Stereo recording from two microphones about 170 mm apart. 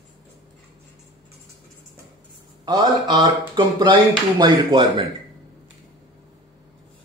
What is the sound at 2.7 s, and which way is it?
Speech, 25° right (ahead or behind).